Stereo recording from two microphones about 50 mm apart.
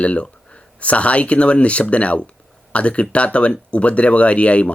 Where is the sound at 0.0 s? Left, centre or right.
Left.